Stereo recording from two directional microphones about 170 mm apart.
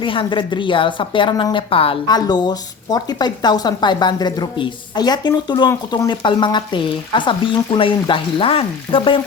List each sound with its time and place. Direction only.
0.0 s a woman's voice: 30° left (ahead or behind)